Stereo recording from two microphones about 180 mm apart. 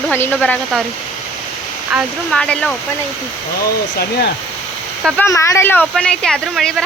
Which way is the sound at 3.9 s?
60° left (ahead or behind).